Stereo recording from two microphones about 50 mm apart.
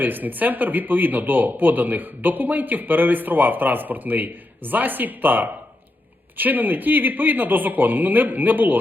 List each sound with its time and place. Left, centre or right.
0.0 s speech: right